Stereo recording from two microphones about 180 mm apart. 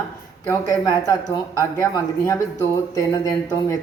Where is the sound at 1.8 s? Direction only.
15° left (ahead or behind).